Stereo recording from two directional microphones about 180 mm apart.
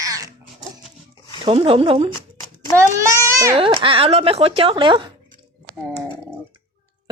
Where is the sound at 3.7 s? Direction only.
30° right (ahead or behind).